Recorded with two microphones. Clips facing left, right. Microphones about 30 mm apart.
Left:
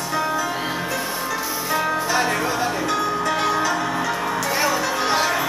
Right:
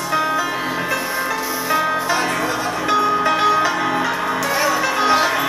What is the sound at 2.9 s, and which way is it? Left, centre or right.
Music, centre.